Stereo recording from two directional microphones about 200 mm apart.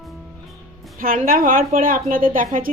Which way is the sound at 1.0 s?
45° right (ahead or behind).